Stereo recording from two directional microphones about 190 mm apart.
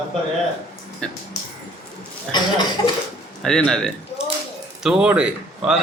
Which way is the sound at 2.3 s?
20° left (ahead or behind).